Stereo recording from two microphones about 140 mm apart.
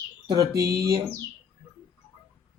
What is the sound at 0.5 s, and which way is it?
Speech, 25° right (ahead or behind).